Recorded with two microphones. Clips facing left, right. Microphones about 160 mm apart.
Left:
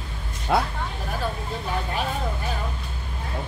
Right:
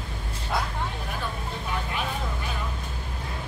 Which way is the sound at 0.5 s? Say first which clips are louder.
Left 7 dB; 75° left (ahead or behind).